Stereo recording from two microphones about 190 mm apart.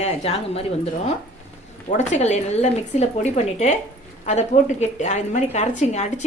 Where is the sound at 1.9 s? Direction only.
35° left (ahead or behind).